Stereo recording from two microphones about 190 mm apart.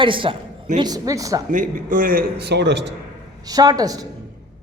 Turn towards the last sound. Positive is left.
turn(degrees=-20)  # may be behind; listen again after turning